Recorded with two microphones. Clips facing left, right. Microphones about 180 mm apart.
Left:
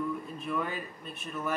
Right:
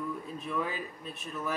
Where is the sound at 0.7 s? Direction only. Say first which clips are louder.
Even; 60° left (ahead or behind).